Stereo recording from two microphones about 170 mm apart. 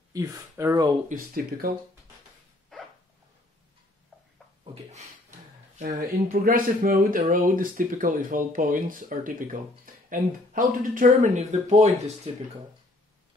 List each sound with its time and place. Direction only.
0.1 s speech: 20° right (ahead or behind)
1.0 s speech: 60° right (ahead or behind)
5.8 s speech: 50° right (ahead or behind)